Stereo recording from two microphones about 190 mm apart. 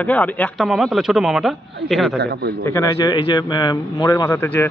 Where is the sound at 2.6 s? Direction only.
15° left (ahead or behind).